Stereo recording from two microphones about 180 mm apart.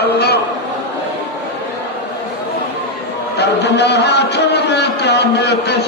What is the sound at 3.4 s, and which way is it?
Speech, 70° left (ahead or behind).